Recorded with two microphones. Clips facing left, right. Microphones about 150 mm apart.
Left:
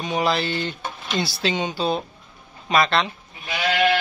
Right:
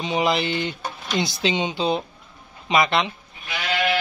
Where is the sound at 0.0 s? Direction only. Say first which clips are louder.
Right 1 dB; 15° right (ahead or behind).